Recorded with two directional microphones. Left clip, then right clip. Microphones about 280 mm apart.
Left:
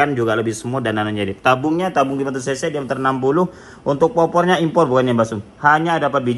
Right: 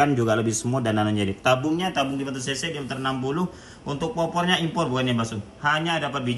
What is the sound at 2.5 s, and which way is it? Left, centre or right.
A man's voice, centre.